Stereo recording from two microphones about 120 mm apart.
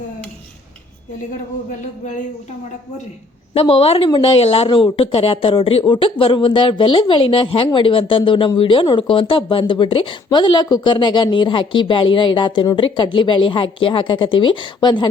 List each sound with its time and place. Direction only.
3.5 s a woman's voice: 55° left (ahead or behind)